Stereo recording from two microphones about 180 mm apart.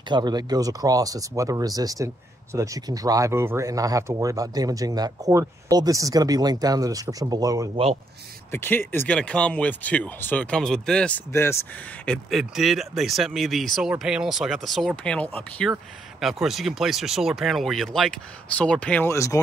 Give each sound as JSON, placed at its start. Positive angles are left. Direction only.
{"t": 0.1, "sound": "speech", "side_deg": -25}
{"t": 7.7, "sound": "speech", "side_deg": -35}
{"t": 8.5, "sound": "speech", "side_deg": 10}